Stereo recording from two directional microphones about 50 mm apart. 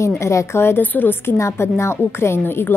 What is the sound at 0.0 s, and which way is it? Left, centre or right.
Speech, left.